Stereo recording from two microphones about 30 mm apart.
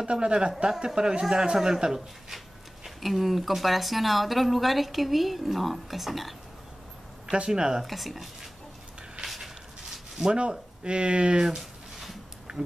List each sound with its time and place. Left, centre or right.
0.0 s speech: right
2.3 s speech: centre
7.4 s speech: right
7.8 s speech: centre
9.2 s a sound: centre
10.2 s speech: right
12.5 s speech: right